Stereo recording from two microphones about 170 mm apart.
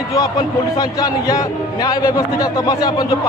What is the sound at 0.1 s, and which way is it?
A man's voice, 20° left (ahead or behind).